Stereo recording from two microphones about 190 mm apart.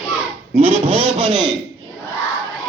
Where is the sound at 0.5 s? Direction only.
30° right (ahead or behind).